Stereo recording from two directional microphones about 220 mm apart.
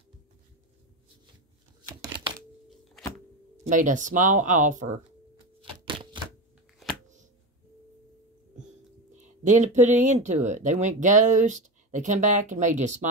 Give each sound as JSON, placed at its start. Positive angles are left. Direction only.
{"t": 1.8, "sound": "a sound", "side_deg": -20}
{"t": 3.6, "sound": "speech", "side_deg": -35}
{"t": 5.6, "sound": "shuffling cards", "side_deg": -20}
{"t": 9.1, "sound": "speech", "side_deg": -35}